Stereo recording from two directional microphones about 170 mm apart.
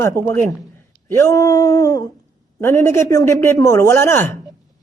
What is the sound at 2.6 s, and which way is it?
Speech, 15° left (ahead or behind).